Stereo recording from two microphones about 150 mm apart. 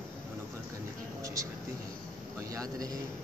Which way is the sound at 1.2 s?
20° right (ahead or behind).